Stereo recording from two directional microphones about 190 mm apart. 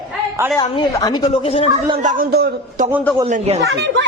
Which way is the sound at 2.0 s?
45° right (ahead or behind).